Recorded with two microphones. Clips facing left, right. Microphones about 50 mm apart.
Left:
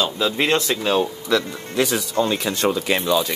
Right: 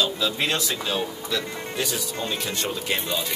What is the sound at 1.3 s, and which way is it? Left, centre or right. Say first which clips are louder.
Speech: left 9 dB; left.